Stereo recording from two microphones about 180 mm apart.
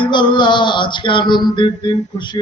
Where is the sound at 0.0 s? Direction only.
25° left (ahead or behind).